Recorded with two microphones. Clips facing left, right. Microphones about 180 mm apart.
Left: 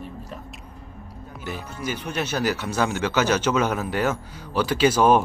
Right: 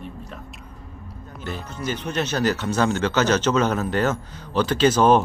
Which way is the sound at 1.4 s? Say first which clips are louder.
Right 1 dB; 10° left (ahead or behind).